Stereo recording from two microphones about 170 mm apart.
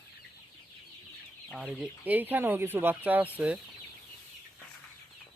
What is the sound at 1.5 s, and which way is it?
Speech, 5° right (ahead or behind).